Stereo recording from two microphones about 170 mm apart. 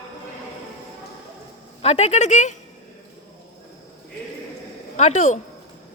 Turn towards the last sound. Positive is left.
turn(degrees=40)  # may be behind; listen again after turning